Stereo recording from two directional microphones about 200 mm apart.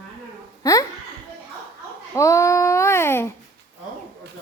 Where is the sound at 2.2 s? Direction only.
15° left (ahead or behind).